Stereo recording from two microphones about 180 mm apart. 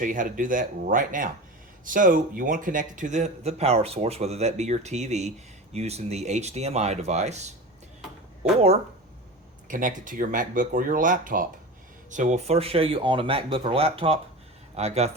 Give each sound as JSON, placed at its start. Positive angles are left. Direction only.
{"t": 0.0, "sound": "a man's voice", "side_deg": -45}
{"t": 9.6, "sound": "a man's voice", "side_deg": -45}